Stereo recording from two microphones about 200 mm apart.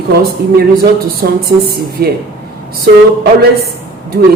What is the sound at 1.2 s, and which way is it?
Speech, 40° right (ahead or behind).